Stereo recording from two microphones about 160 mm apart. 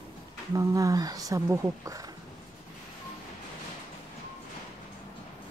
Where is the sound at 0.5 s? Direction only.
20° right (ahead or behind).